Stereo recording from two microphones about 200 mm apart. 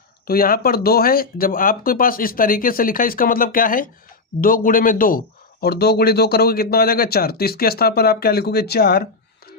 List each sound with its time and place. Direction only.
0.3 s speech: 45° left (ahead or behind)